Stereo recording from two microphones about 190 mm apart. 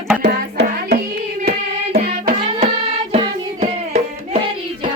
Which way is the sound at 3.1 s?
35° right (ahead or behind).